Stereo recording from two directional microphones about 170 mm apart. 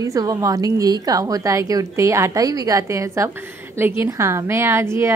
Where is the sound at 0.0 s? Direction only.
20° right (ahead or behind).